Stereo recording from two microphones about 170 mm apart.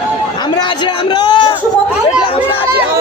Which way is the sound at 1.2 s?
30° left (ahead or behind).